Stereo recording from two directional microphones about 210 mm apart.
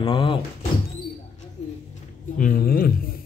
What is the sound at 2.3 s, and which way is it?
Speech, 40° left (ahead or behind).